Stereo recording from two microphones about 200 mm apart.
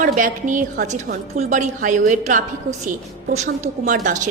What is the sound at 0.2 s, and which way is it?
A woman's voice, 40° right (ahead or behind).